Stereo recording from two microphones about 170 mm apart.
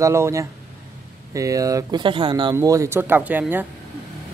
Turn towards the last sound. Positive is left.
turn(degrees=-10)  # may be behind; listen again after turning